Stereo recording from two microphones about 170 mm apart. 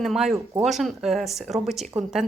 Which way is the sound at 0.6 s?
Centre (ahead or behind).